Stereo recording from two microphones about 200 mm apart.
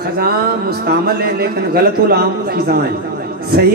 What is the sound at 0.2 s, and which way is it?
Speech, 50° right (ahead or behind).